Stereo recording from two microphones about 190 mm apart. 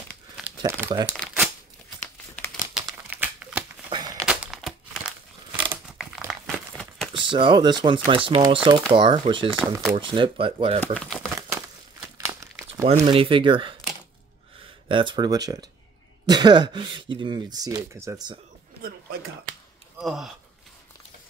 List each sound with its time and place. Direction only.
0.6 s speech: 15° right (ahead or behind)
2.5 s crumpling: centre (ahead or behind)
3.9 s a sound: 20° right (ahead or behind)
4.3 s crumpling: centre (ahead or behind)
7.2 s speech: 25° right (ahead or behind)
11.0 s speech: centre (ahead or behind)
11.4 s crumpling: 15° right (ahead or behind)
12.9 s speech: 25° right (ahead or behind)
14.9 s speech: 25° right (ahead or behind)
18.8 s a sound: 55° right (ahead or behind)
20.0 s a sound: centre (ahead or behind)